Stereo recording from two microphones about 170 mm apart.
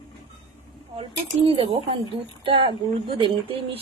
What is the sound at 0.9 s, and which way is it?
Speech, 30° right (ahead or behind).